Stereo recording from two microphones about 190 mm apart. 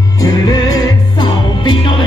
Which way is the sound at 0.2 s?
20° left (ahead or behind).